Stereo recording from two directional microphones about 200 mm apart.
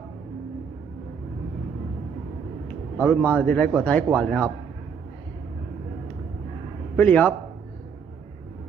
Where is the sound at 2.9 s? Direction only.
5° left (ahead or behind).